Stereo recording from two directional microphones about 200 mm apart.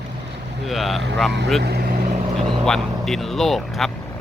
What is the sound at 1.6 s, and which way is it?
Vehicle, 50° right (ahead or behind).